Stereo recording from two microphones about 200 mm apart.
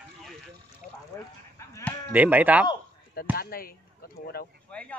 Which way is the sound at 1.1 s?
15° left (ahead or behind).